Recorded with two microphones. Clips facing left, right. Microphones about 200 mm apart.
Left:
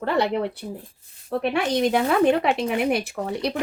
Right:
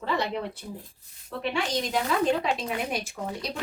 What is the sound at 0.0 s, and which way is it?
A woman's voice, 65° left (ahead or behind).